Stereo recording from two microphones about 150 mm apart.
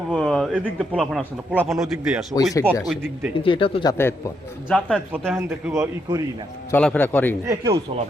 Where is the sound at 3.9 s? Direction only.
20° left (ahead or behind).